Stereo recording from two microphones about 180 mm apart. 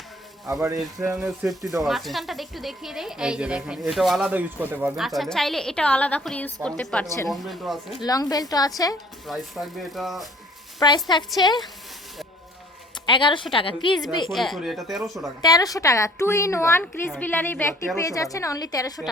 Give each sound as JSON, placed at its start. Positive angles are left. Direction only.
{"t": 1.2, "sound": "speech", "side_deg": -5}
{"t": 8.0, "sound": "a woman's voice", "side_deg": 20}
{"t": 9.2, "sound": "speech", "side_deg": 0}
{"t": 10.8, "sound": "a woman's voice", "side_deg": 25}
{"t": 13.1, "sound": "a woman's voice", "side_deg": 25}
{"t": 14.3, "sound": "speech", "side_deg": 0}
{"t": 15.4, "sound": "a woman's voice", "side_deg": 20}